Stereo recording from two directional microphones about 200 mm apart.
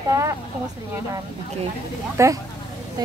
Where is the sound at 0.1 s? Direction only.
15° right (ahead or behind).